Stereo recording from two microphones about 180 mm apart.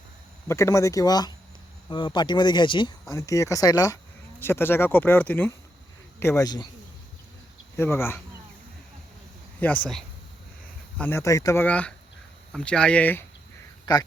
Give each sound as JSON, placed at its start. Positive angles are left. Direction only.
{"t": 0.4, "sound": "speech", "side_deg": 15}
{"t": 7.8, "sound": "speech", "side_deg": 10}
{"t": 9.6, "sound": "speech", "side_deg": 10}